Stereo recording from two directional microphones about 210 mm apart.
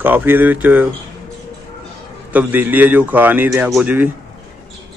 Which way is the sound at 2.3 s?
10° right (ahead or behind).